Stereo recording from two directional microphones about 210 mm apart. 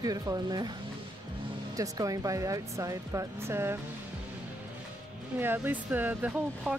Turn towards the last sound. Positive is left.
turn(degrees=-5)  # may be behind; listen again after turning